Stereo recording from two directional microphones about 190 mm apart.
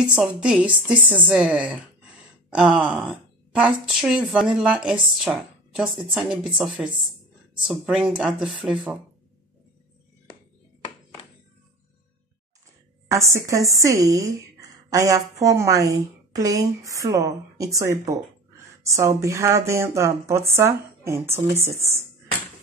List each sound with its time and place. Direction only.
0.0 s a woman's voice: 5° right (ahead or behind)
13.1 s a woman's voice: 15° right (ahead or behind)